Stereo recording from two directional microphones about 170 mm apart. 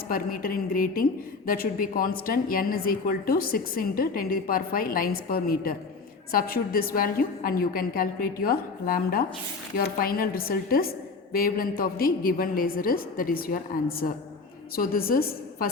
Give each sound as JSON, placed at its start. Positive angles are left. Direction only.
{"t": 0.1, "sound": "a woman's voice", "side_deg": 60}